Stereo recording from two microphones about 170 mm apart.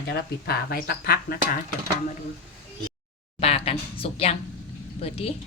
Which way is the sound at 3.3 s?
35° left (ahead or behind).